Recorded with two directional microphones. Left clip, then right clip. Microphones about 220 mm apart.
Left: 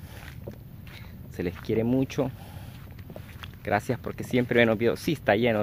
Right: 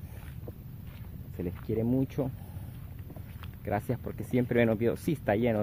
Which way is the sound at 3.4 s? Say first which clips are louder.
Left 6 dB; 10° left (ahead or behind).